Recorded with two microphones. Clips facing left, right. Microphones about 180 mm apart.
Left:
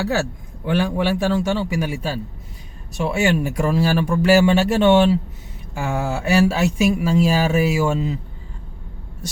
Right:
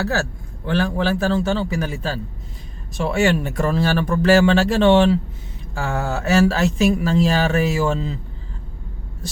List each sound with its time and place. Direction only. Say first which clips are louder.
0.0 s a man's voice: left 1 dB; 15° left (ahead or behind)